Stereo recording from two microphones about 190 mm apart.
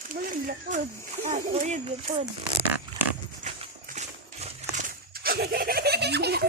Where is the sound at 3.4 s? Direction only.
35° right (ahead or behind).